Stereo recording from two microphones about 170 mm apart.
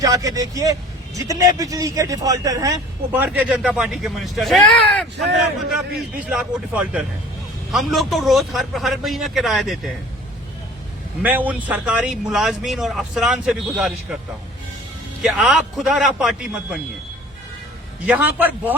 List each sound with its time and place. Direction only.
0.0 s a man's voice: 20° right (ahead or behind); by 5.0 s 5° left (ahead or behind)
6.1 s speech: 5° right (ahead or behind)
11.2 s speech: 10° right (ahead or behind)
15.2 s speech: centre (ahead or behind)
18.0 s speech: 10° right (ahead or behind)